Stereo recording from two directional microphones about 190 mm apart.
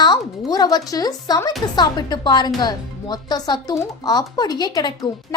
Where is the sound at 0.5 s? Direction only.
20° left (ahead or behind).